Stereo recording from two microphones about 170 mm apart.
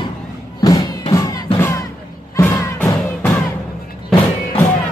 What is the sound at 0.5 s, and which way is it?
Music, 25° left (ahead or behind).